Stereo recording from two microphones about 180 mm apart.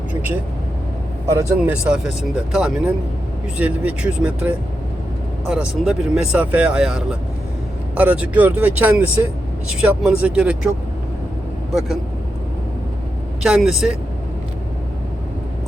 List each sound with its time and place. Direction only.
0.1 s vehicle: 10° right (ahead or behind)
1.3 s speech: 15° right (ahead or behind)
1.7 s speech: 5° right (ahead or behind)
11.7 s speech: centre (ahead or behind)
13.4 s speech: 5° right (ahead or behind)